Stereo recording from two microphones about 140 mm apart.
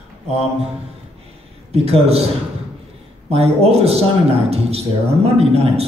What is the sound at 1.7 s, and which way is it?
Speech, 50° right (ahead or behind).